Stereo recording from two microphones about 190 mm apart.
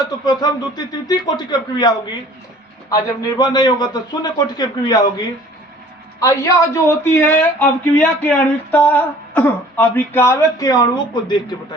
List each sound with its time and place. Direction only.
0.3 s a man's voice: 20° left (ahead or behind)